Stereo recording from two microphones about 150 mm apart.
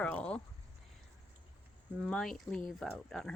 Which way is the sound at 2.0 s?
5° left (ahead or behind).